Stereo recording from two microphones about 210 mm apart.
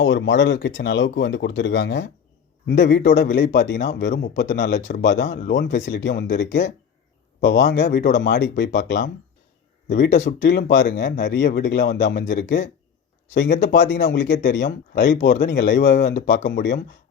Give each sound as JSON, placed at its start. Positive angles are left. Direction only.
{"t": 0.0, "sound": "speech", "side_deg": 60}